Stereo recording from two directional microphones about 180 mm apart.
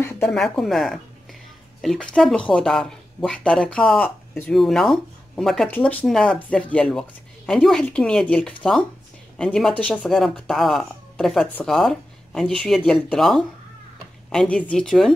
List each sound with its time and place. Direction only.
0.3 s speech: centre (ahead or behind)